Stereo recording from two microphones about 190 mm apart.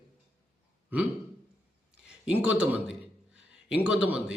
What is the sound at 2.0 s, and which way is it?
A man's voice, 5° right (ahead or behind).